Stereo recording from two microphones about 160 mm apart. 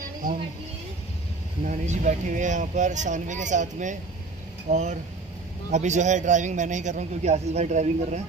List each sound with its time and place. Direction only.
1.6 s a man's voice: 50° right (ahead or behind)